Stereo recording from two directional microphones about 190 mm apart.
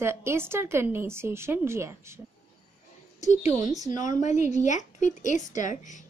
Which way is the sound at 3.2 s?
40° left (ahead or behind).